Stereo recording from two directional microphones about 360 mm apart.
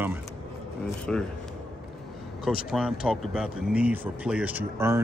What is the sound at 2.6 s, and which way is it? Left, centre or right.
Speech, centre.